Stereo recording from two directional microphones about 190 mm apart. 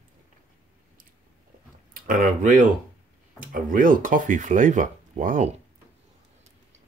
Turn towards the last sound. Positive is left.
turn(degrees=-40)  # may be behind; listen again after turning